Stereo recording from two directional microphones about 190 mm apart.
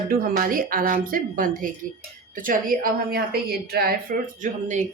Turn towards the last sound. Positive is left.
turn(degrees=-40)  # may be behind; listen again after turning